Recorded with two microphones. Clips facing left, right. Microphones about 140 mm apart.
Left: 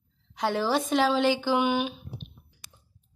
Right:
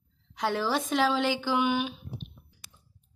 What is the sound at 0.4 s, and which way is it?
Speech, 20° left (ahead or behind).